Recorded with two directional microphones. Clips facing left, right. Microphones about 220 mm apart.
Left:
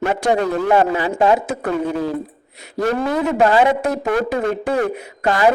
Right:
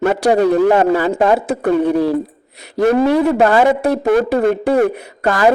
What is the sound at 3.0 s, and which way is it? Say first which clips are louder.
A man's voice: right 4 dB; 30° right (ahead or behind).